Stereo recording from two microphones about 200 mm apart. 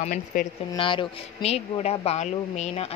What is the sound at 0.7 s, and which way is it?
Speech, 25° left (ahead or behind).